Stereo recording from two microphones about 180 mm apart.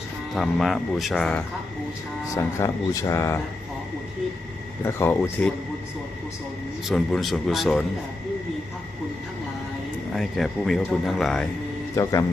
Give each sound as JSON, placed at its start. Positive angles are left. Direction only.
{"t": 0.3, "sound": "speech", "side_deg": 0}
{"t": 2.2, "sound": "speech", "side_deg": 15}
{"t": 4.8, "sound": "speech", "side_deg": 15}
{"t": 6.8, "sound": "speech", "side_deg": 0}
{"t": 10.2, "sound": "speech", "side_deg": 0}